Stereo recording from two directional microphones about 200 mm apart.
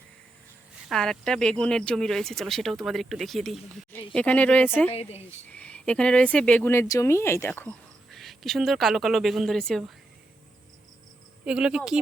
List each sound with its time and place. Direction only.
0.9 s speech: centre (ahead or behind)
4.9 s speech: 30° left (ahead or behind)
5.5 s speech: 5° left (ahead or behind)
11.4 s speech: 5° right (ahead or behind)